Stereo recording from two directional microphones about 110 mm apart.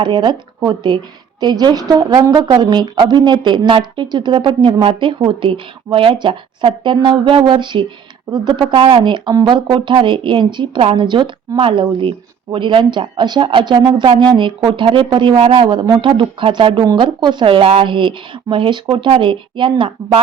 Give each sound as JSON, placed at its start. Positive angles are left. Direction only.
{"t": 0.0, "sound": "a woman's voice", "side_deg": -45}